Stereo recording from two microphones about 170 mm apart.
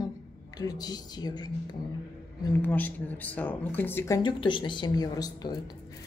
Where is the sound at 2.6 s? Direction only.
10° left (ahead or behind).